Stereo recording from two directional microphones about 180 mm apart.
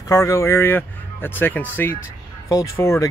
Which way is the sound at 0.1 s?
15° left (ahead or behind).